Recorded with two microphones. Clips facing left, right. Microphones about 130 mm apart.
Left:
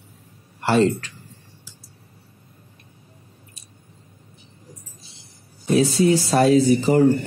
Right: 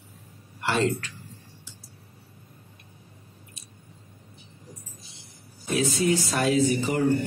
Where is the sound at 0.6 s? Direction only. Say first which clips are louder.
Left 7 dB; 40° left (ahead or behind).